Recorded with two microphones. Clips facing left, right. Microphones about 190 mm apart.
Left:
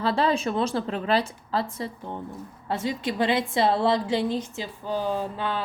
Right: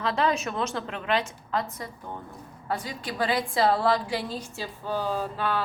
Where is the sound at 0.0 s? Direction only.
30° left (ahead or behind).